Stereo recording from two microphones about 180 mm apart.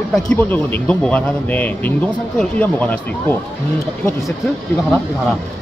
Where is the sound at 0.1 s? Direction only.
10° left (ahead or behind).